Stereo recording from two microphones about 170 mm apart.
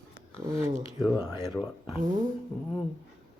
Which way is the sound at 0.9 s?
5° right (ahead or behind).